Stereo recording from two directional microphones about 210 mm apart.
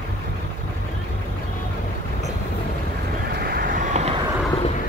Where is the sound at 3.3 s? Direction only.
50° right (ahead or behind); by 4.3 s 30° right (ahead or behind).